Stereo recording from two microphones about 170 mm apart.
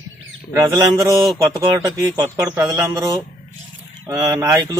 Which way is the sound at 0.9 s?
20° right (ahead or behind).